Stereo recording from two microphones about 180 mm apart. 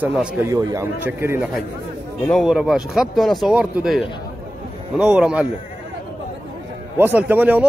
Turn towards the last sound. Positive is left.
turn(degrees=-10)  # may be behind; listen again after turning